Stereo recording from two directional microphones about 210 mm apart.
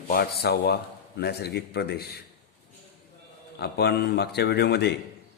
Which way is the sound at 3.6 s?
50° left (ahead or behind).